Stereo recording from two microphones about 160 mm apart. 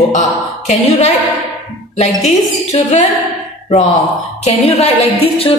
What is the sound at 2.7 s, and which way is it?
Speech, 45° left (ahead or behind).